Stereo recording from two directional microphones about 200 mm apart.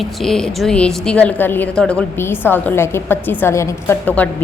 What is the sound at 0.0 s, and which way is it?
A woman's voice, centre (ahead or behind).